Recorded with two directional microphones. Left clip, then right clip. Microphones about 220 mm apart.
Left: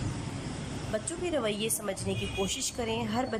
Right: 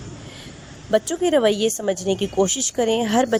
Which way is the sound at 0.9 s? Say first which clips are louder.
Right 14 dB; 35° right (ahead or behind).